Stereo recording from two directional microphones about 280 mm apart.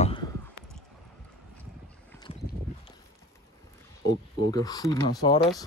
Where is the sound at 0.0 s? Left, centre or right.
Centre.